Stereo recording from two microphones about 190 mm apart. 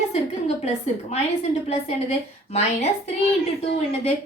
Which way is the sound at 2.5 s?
35° left (ahead or behind).